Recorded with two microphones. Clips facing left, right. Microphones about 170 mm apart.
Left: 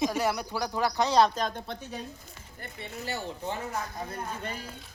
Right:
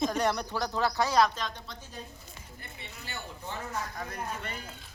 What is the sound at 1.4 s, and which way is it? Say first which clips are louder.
Speech: left 6 dB; 50° left (ahead or behind).